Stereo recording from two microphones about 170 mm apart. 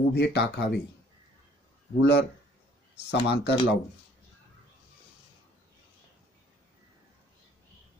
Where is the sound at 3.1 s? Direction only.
90° left.